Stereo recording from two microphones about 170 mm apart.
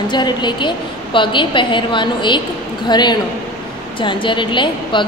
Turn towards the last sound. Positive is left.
turn(degrees=30)  # may be behind; listen again after turning